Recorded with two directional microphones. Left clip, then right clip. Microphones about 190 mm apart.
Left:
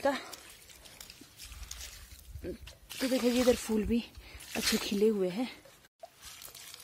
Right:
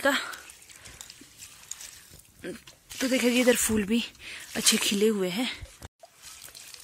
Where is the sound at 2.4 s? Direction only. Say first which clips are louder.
Right 3 dB; 5° right (ahead or behind).